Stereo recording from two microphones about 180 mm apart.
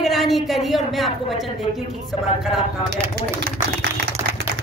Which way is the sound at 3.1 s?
65° right (ahead or behind).